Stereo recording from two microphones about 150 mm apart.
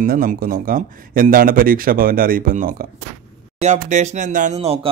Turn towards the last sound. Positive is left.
turn(degrees=-60)  # may be behind; listen again after turning